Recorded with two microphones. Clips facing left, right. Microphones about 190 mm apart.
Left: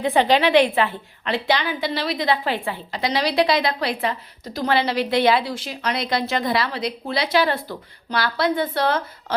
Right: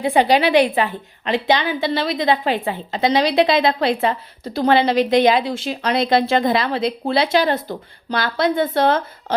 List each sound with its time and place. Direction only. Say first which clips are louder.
0.0 s a woman's voice: right 2 dB; 15° right (ahead or behind)
7.4 s speech: right 3 dB; 45° right (ahead or behind)
8.1 s a woman's voice: right 2 dB; 25° right (ahead or behind)